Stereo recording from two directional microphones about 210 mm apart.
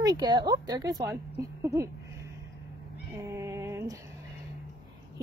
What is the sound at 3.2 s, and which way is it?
Female singing, 15° right (ahead or behind).